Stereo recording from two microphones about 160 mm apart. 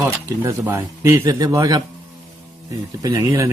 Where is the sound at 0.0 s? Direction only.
15° right (ahead or behind).